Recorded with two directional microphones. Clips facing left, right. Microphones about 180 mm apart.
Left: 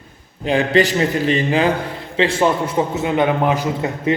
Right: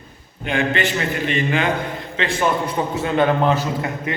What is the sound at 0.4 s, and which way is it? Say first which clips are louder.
A man's voice: left 5 dB; 35° left (ahead or behind).